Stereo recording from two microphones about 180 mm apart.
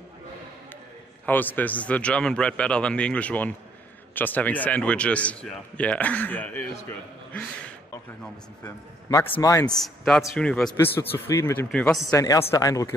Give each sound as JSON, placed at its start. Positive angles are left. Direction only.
{"t": 1.2, "sound": "a man's voice", "side_deg": 10}
{"t": 9.1, "sound": "a man's voice", "side_deg": 15}
{"t": 9.7, "sound": "a man's voice", "side_deg": 5}
{"t": 12.1, "sound": "speech", "side_deg": 20}